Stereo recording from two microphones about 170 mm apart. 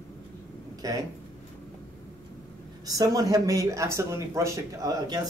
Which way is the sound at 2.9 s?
20° right (ahead or behind).